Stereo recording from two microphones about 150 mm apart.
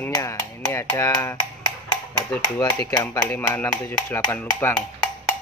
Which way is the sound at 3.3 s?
15° left (ahead or behind).